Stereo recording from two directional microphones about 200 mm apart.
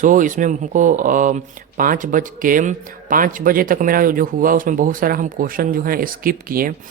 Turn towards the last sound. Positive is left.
turn(degrees=-45)  # may be behind; listen again after turning